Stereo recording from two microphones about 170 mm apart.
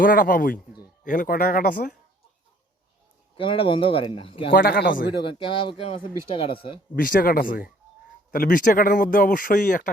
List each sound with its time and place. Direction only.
0.0 s speech: 55° left (ahead or behind)
3.3 s speech: 30° left (ahead or behind)
4.5 s speech: 60° left (ahead or behind)
5.2 s speech: 30° left (ahead or behind)
6.9 s speech: 55° left (ahead or behind)